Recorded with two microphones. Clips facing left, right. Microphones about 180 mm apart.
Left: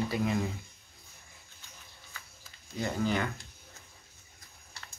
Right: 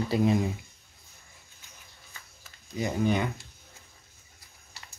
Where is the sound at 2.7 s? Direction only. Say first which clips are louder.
Right 4 dB; 15° right (ahead or behind).